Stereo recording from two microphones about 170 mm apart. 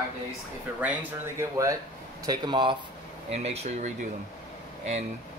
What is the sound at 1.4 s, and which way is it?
Speech, 20° right (ahead or behind).